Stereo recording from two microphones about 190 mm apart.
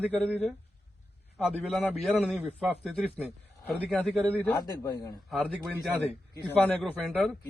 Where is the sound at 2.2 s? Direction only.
5° right (ahead or behind).